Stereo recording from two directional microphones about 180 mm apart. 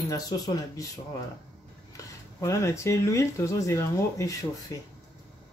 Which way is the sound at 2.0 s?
15° left (ahead or behind).